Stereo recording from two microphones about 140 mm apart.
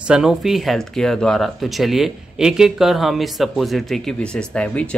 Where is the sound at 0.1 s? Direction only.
5° right (ahead or behind).